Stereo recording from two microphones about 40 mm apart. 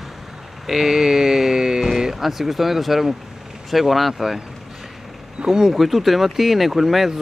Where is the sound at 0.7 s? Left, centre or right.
Centre.